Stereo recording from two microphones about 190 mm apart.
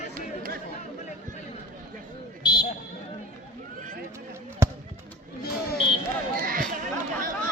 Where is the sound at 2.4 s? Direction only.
25° left (ahead or behind).